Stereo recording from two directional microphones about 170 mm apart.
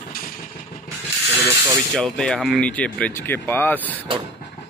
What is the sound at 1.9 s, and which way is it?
Speech, 5° left (ahead or behind).